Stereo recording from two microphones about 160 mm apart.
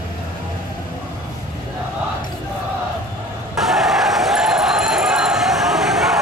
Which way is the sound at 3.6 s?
Centre (ahead or behind).